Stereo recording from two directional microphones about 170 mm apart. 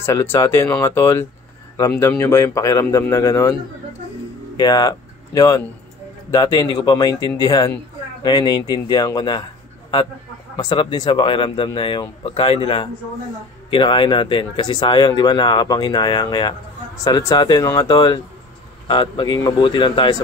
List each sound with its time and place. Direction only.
0.0 s speech: 15° left (ahead or behind)
4.6 s speech: 20° left (ahead or behind)
10.6 s speech: 25° left (ahead or behind)